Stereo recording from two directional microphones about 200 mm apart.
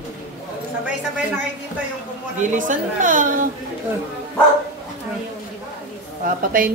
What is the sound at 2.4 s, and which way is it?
A woman's voice, 40° right (ahead or behind).